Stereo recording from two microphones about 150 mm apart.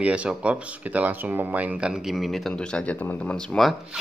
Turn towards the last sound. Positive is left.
turn(degrees=0)  # may be behind; listen again after turning